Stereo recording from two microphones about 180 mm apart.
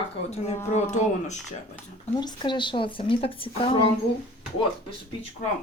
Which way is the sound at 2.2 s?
25° left (ahead or behind).